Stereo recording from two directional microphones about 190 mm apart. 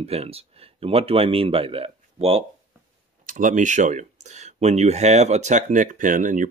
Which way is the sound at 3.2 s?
45° right (ahead or behind).